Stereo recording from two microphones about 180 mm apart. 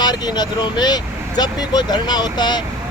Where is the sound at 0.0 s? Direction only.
20° left (ahead or behind).